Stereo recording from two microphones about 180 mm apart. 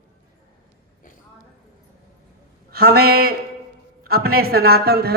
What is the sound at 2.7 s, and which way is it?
Speech, 60° right (ahead or behind).